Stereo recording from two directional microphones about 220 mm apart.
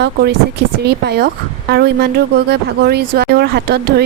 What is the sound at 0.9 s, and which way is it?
Speech, 45° right (ahead or behind).